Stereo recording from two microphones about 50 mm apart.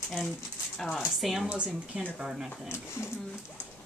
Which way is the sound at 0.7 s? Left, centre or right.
Centre.